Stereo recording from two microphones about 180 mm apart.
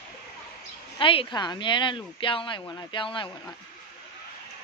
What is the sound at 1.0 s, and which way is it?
Speech, 30° left (ahead or behind).